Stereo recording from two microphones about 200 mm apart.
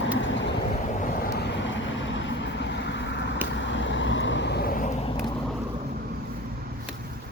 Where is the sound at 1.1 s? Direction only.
50° left (ahead or behind).